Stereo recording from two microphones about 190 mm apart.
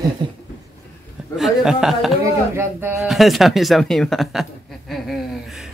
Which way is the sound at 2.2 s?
15° right (ahead or behind).